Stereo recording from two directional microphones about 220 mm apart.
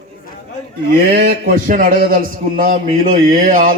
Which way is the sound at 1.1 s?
40° right (ahead or behind).